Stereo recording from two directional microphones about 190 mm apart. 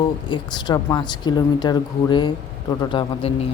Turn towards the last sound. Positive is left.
turn(degrees=30)  # may be behind; listen again after turning